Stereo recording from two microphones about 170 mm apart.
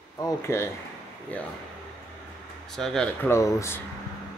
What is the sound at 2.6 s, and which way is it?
Speech, centre (ahead or behind).